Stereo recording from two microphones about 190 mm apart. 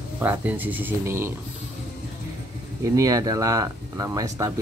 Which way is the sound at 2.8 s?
20° right (ahead or behind).